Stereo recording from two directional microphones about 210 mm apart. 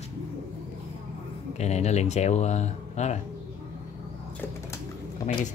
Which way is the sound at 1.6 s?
30° left (ahead or behind).